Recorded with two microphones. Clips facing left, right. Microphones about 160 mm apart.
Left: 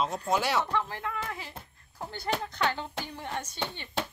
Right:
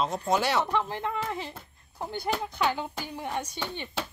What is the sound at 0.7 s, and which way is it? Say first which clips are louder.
Speech: right 3 dB; 20° right (ahead or behind).